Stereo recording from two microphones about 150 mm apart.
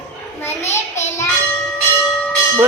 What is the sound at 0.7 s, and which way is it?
Speech, 20° left (ahead or behind).